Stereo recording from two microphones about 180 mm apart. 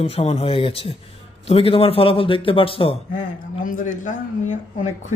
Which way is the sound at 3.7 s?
45° left (ahead or behind).